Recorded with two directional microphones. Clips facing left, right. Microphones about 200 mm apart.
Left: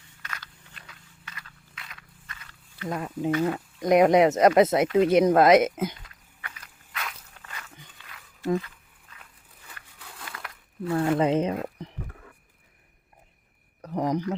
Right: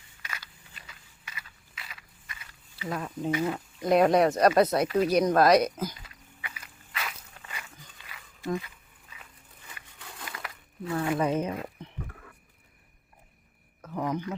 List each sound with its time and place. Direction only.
0.2 s scrape: 10° right (ahead or behind)
3.0 s speech: 10° left (ahead or behind); by 6.0 s 25° left (ahead or behind)
6.0 s walk: 5° right (ahead or behind)
8.0 s wild animals: 5° right (ahead or behind)
8.6 s a sound: 5° right (ahead or behind)
11.2 s speech: 25° left (ahead or behind)
13.8 s a sound: 35° left (ahead or behind)